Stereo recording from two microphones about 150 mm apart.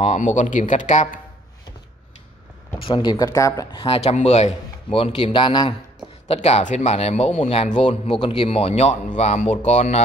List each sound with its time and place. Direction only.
0.0 s speech: 55° left (ahead or behind)
2.9 s speech: 25° left (ahead or behind)
3.8 s a man's voice: 40° left (ahead or behind)
6.2 s speech: 45° left (ahead or behind)